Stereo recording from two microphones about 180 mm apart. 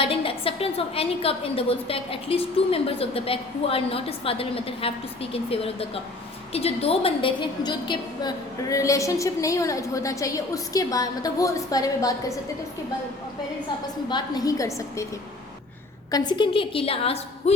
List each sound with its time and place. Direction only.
0.0 s a woman's voice: 30° left (ahead or behind)
14.1 s a woman's voice: 20° left (ahead or behind)
16.1 s a woman's voice: 25° left (ahead or behind)